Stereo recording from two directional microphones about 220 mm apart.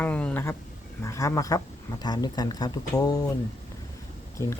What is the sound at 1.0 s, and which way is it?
Speech, 15° left (ahead or behind).